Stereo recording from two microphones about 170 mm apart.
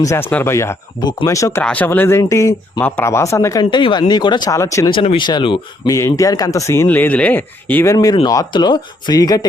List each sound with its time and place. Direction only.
0.0 s speech: 15° left (ahead or behind)
4.9 s speech: 30° left (ahead or behind); by 7.9 s 10° left (ahead or behind)
7.9 s speech: 25° left (ahead or behind)